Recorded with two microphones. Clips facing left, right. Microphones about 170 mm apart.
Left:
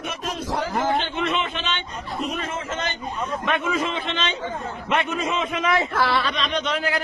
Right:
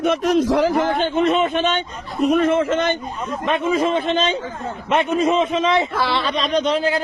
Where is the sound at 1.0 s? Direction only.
40° right (ahead or behind); by 2.9 s 60° right (ahead or behind).